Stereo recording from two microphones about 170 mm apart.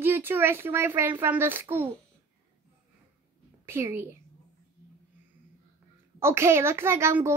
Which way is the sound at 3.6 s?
15° right (ahead or behind).